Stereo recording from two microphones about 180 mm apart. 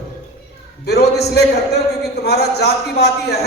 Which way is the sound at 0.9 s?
65° left (ahead or behind).